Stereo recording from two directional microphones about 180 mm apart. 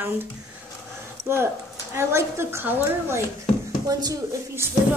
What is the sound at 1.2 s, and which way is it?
A woman's voice, 15° right (ahead or behind).